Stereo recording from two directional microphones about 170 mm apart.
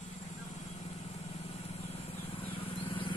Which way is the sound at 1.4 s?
35° left (ahead or behind).